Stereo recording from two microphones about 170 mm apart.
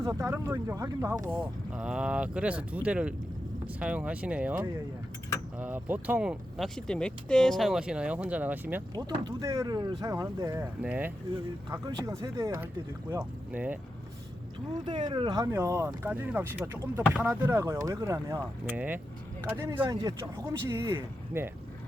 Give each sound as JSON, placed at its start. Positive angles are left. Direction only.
{"t": 0.0, "sound": "speech", "side_deg": -20}
{"t": 1.4, "sound": "speech", "side_deg": -5}
{"t": 6.6, "sound": "speech", "side_deg": 5}
{"t": 9.0, "sound": "speech", "side_deg": -25}
{"t": 14.7, "sound": "speech", "side_deg": -30}